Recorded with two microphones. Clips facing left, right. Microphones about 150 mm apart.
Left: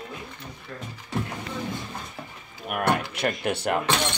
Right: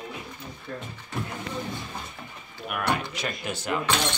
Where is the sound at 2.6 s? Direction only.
50° left (ahead or behind).